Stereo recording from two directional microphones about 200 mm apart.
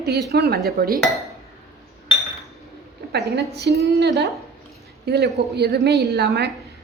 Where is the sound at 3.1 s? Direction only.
55° right (ahead or behind).